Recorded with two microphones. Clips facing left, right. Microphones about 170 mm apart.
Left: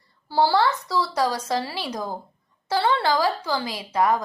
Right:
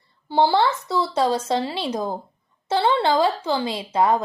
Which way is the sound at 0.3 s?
20° right (ahead or behind).